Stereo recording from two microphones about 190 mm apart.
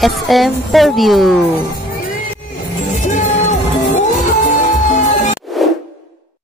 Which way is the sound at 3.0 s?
40° left (ahead or behind).